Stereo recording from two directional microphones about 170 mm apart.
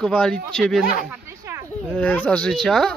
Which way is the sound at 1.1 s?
15° right (ahead or behind).